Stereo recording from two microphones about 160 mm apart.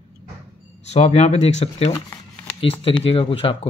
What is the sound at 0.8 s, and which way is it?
Speech, 45° left (ahead or behind).